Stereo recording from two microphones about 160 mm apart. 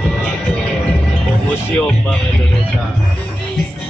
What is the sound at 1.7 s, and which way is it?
Speech, 10° left (ahead or behind).